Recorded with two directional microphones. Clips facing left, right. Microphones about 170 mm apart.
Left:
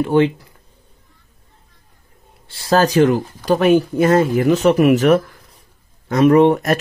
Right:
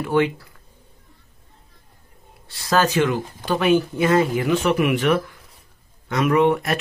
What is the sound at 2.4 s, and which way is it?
Speech, 30° left (ahead or behind).